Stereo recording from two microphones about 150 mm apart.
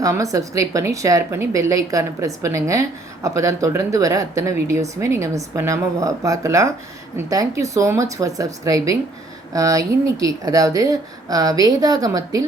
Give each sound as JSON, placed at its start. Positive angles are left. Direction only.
{"t": 0.0, "sound": "speech", "side_deg": -20}